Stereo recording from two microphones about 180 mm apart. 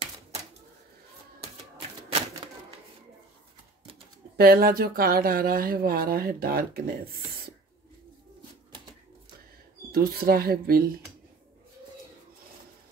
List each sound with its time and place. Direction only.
4.4 s speech: 55° right (ahead or behind)
9.9 s speech: 55° right (ahead or behind)